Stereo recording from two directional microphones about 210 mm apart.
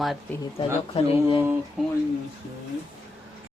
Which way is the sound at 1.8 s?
5° right (ahead or behind).